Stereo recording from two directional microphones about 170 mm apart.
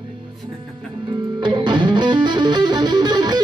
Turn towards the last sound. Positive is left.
turn(degrees=-25)  # may be behind; listen again after turning